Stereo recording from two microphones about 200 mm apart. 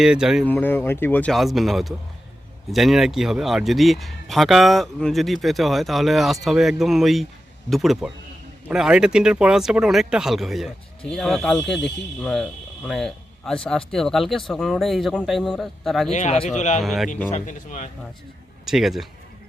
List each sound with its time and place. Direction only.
0.0 s speech: 5° right (ahead or behind)
0.4 s speech: 10° left (ahead or behind)
16.1 s a man's voice: 35° left (ahead or behind)
16.8 s speech: centre (ahead or behind)
17.3 s a man's voice: 35° left (ahead or behind)
18.6 s speech: centre (ahead or behind)